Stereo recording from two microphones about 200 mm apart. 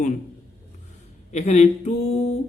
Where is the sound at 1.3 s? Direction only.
35° left (ahead or behind).